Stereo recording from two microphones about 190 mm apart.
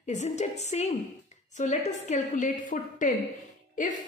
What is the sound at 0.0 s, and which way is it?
A woman's voice, 40° left (ahead or behind).